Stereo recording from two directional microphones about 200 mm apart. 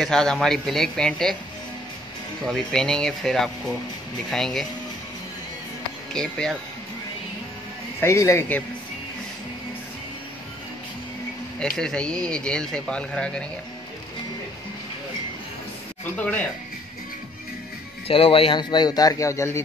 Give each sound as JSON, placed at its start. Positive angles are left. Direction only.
{"t": 0.0, "sound": "speech", "side_deg": 5}
{"t": 2.4, "sound": "speech", "side_deg": 5}
{"t": 6.1, "sound": "speech", "side_deg": 5}
{"t": 8.0, "sound": "speech", "side_deg": 15}
{"t": 11.7, "sound": "speech", "side_deg": 5}
{"t": 16.2, "sound": "speech", "side_deg": 5}
{"t": 18.0, "sound": "speech", "side_deg": 25}